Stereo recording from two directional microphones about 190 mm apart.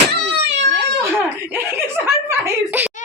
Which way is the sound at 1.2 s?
10° right (ahead or behind).